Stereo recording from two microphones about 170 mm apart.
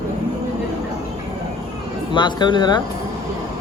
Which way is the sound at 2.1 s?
25° left (ahead or behind).